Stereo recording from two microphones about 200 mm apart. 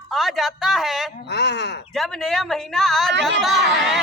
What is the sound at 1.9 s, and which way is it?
A woman's voice, centre (ahead or behind).